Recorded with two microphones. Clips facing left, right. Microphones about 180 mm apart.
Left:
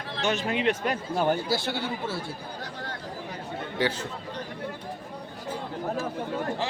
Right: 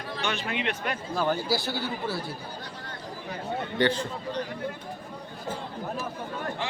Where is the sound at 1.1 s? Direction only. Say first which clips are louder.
Even; 25° left (ahead or behind).